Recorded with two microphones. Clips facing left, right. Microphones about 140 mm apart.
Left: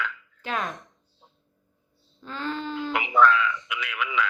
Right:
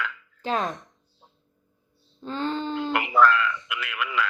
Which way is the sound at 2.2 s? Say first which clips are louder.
Right 4 dB; 30° right (ahead or behind).